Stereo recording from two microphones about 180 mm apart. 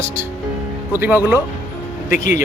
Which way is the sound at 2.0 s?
45° left (ahead or behind).